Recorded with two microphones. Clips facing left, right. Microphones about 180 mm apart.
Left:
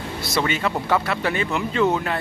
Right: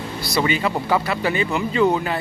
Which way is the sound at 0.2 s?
Centre (ahead or behind).